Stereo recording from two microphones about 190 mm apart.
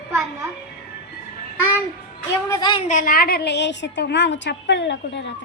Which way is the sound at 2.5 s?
25° left (ahead or behind).